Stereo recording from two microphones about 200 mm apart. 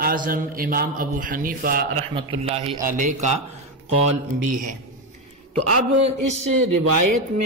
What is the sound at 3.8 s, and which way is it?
Speech, 35° right (ahead or behind).